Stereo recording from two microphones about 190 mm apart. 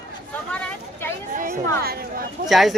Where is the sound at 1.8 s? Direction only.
50° right (ahead or behind).